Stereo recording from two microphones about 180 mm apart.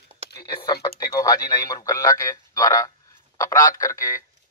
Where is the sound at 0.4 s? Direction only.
20° left (ahead or behind).